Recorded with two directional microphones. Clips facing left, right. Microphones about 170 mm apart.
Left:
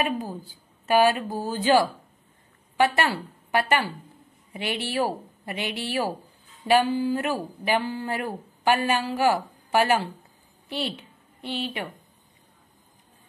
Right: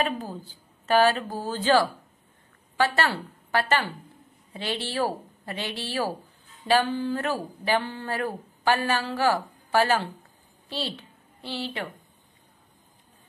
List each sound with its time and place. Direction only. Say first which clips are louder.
0.0 s a woman's voice: left 1 dB; 10° left (ahead or behind)